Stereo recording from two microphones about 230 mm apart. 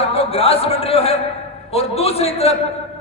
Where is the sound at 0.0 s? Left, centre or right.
Left.